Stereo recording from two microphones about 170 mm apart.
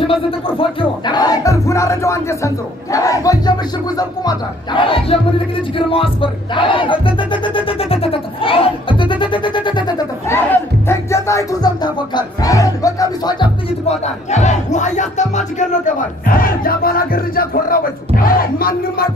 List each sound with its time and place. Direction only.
0.0 s speech: 30° left (ahead or behind)
5.8 s music: 30° left (ahead or behind)
10.2 s music: 15° left (ahead or behind)
13.8 s music: 45° left (ahead or behind)
16.3 s crowd: 60° left (ahead or behind)